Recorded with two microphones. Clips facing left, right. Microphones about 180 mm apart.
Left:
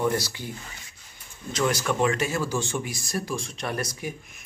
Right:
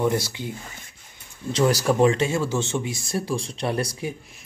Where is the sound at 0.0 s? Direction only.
20° right (ahead or behind).